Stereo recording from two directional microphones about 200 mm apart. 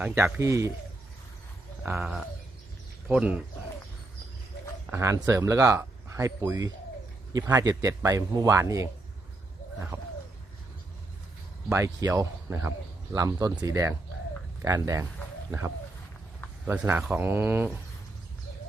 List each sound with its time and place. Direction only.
0.0 s speech: 10° right (ahead or behind)
1.8 s speech: 10° right (ahead or behind)
4.9 s speech: 15° right (ahead or behind)
9.9 s speech: 10° right (ahead or behind)
11.7 s speech: 15° right (ahead or behind)
16.6 s speech: 10° right (ahead or behind)